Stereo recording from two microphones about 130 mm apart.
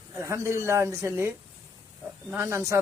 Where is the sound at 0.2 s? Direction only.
20° right (ahead or behind).